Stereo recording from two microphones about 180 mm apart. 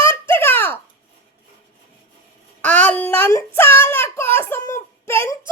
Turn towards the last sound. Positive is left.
turn(degrees=15)  # may be behind; listen again after turning